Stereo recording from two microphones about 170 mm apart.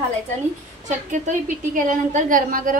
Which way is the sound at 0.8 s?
45° right (ahead or behind).